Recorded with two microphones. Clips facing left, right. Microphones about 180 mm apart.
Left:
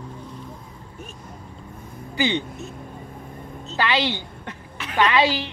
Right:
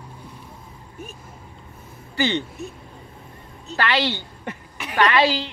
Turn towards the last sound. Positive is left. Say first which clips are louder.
# right 1 dB
turn(degrees=20)  # may be behind; listen again after turning